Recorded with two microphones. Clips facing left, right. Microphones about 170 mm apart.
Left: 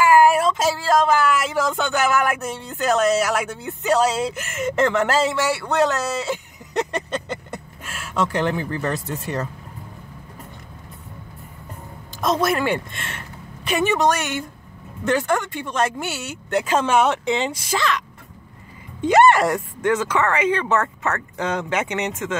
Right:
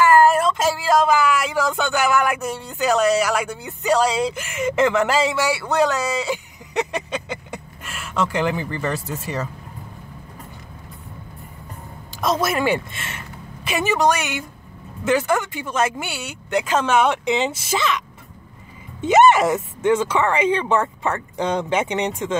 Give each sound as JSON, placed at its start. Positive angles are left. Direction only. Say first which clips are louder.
{"t": 0.0, "sound": "speech", "louder": "even", "side_deg": 10}
{"t": 12.1, "sound": "a woman's voice", "louder": "left 1 dB", "side_deg": -5}
{"t": 17.2, "sound": "speech", "louder": "right 1 dB", "side_deg": -20}
{"t": 20.8, "sound": "a woman's voice", "louder": "right 1 dB", "side_deg": -10}
{"t": 21.6, "sound": "speech", "louder": "right 2 dB", "side_deg": -30}